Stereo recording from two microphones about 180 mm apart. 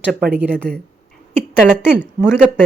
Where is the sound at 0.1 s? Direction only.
55° right (ahead or behind).